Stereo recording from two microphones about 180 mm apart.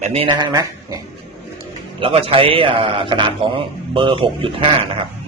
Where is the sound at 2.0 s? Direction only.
30° right (ahead or behind).